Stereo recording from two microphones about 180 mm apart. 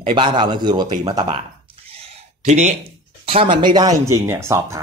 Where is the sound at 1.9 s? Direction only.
35° right (ahead or behind).